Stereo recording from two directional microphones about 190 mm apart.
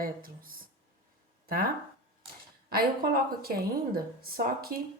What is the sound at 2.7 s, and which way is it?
A woman's voice, 50° right (ahead or behind).